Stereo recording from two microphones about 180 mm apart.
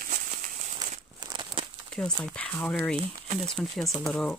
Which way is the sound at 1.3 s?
30° right (ahead or behind).